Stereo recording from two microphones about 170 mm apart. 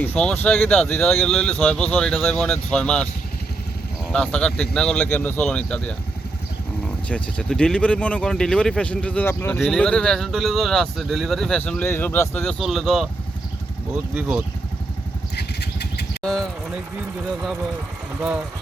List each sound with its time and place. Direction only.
0.0 s speech: 10° left (ahead or behind)
4.1 s speech: 5° left (ahead or behind)
7.1 s speech: 5° left (ahead or behind)
15.4 s vehicle: 75° left (ahead or behind)
16.2 s speech: 5° left (ahead or behind)